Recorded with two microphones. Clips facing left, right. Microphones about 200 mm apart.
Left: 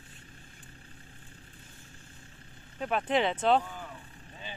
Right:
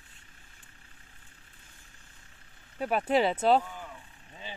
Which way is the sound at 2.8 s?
5° right (ahead or behind).